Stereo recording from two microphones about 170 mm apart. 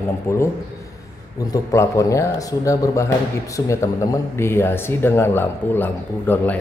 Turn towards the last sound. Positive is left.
turn(degrees=10)  # may be behind; listen again after turning